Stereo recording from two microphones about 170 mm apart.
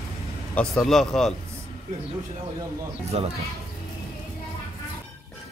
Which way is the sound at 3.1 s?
35° right (ahead or behind).